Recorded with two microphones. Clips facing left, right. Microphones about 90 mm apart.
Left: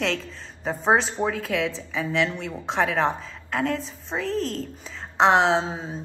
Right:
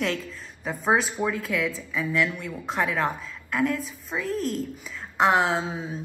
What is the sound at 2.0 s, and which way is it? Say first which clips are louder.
Speech: left 1 dB; 30° left (ahead or behind).